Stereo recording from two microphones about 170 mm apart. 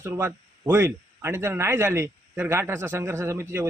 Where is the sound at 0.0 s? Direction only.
15° right (ahead or behind).